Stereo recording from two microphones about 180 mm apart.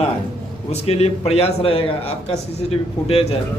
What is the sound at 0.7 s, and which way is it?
Speech, 35° left (ahead or behind).